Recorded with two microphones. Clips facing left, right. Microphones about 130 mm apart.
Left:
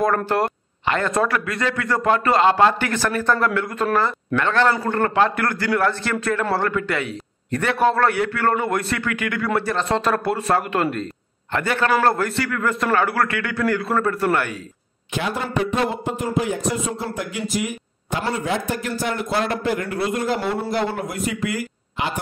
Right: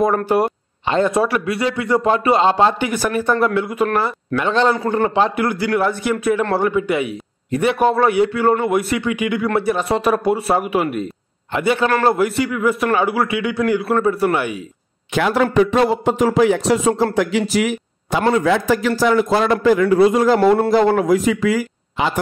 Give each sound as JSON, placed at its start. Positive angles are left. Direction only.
{"t": 0.3, "sound": "a man's voice", "side_deg": -20}
{"t": 15.1, "sound": "a sound", "side_deg": -90}
{"t": 20.2, "sound": "speech", "side_deg": -65}